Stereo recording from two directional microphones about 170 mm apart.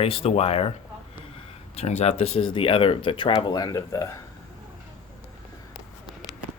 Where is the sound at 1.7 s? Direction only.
40° left (ahead or behind); by 4.1 s 20° left (ahead or behind).